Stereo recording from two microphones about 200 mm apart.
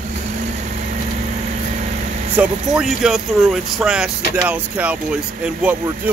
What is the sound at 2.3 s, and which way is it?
Speech, 5° right (ahead or behind).